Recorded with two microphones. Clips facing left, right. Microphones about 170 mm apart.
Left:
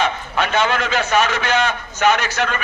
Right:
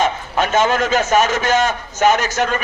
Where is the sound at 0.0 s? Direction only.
45° right (ahead or behind).